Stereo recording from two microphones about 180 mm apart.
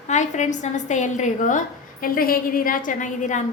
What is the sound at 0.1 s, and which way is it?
A woman's voice, 40° left (ahead or behind).